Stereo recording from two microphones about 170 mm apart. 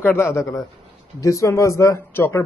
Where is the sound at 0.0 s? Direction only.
15° left (ahead or behind).